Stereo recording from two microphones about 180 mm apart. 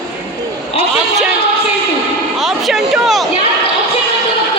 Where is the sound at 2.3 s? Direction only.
Centre (ahead or behind).